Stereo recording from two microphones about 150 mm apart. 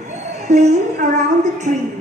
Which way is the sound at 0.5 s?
45° right (ahead or behind).